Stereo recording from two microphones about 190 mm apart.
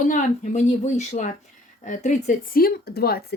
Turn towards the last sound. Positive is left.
turn(degrees=55)  # may be behind; listen again after turning